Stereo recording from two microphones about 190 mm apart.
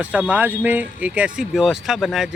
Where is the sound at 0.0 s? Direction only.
5° right (ahead or behind).